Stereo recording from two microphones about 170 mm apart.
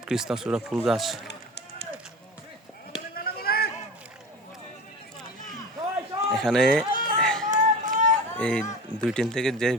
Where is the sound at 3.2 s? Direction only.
65° left (ahead or behind).